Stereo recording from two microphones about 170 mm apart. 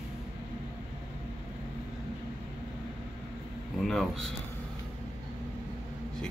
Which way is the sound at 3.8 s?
Centre (ahead or behind).